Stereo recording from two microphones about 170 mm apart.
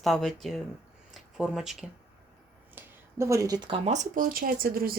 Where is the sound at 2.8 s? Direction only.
15° right (ahead or behind).